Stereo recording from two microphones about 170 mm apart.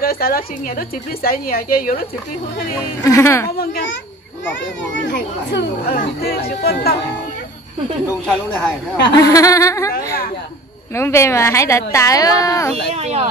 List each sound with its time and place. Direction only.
0.0 s a woman's voice: 60° left (ahead or behind)
3.0 s speech: 20° left (ahead or behind)
3.5 s a woman's voice: 65° left (ahead or behind)
5.0 s speech: 90° left
5.9 s a woman's voice: 65° left (ahead or behind)
9.1 s speech: 20° left (ahead or behind)
9.9 s a woman's voice: 60° left (ahead or behind)
11.0 s speech: 15° left (ahead or behind)
12.9 s speech: 40° right (ahead or behind)